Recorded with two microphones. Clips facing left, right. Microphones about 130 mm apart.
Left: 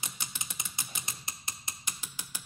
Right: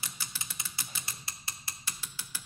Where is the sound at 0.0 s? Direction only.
20° left (ahead or behind).